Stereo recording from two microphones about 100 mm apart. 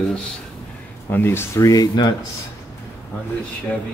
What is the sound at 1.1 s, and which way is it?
Speech, 20° left (ahead or behind).